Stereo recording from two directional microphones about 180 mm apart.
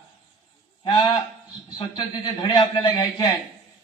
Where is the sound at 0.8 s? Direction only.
25° left (ahead or behind).